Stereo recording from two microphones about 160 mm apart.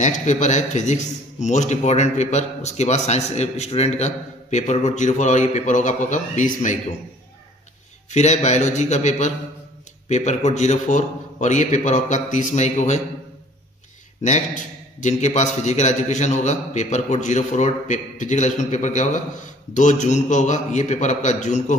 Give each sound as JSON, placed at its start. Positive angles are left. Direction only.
{"t": 0.0, "sound": "a man's voice", "side_deg": 50}
{"t": 8.1, "sound": "a man's voice", "side_deg": 45}
{"t": 14.2, "sound": "a man's voice", "side_deg": 50}